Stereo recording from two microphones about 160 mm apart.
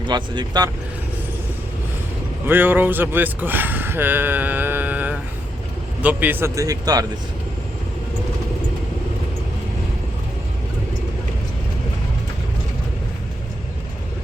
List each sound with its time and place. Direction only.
0.1 s speech: 25° right (ahead or behind)
2.5 s a man's voice: 10° right (ahead or behind)